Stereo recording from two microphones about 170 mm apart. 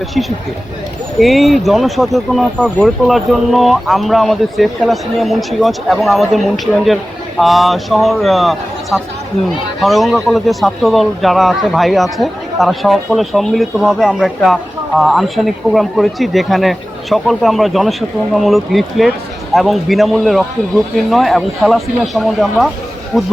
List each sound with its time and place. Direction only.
1.2 s a man's voice: centre (ahead or behind)
23.1 s speech: 10° left (ahead or behind)